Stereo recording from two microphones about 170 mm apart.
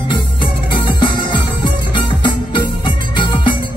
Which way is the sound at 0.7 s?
25° left (ahead or behind).